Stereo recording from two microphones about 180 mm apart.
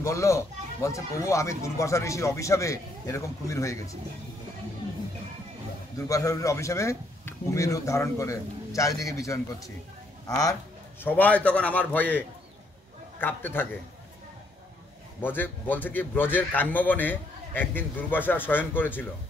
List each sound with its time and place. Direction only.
0.0 s speech: 15° left (ahead or behind)
5.9 s speech: 20° left (ahead or behind)
11.0 s speech: 10° left (ahead or behind)
15.2 s speech: 10° left (ahead or behind)